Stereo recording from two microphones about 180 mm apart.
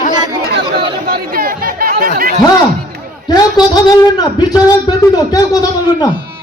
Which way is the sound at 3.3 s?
20° left (ahead or behind).